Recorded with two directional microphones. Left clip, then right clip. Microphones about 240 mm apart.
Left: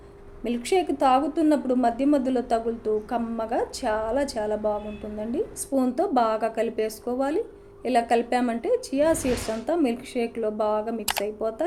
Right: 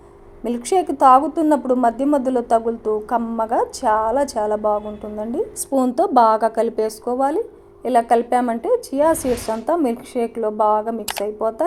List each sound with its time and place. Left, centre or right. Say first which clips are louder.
0.4 s a woman's voice: right 5 dB; centre
9.6 s a woman's voice: right 5 dB; centre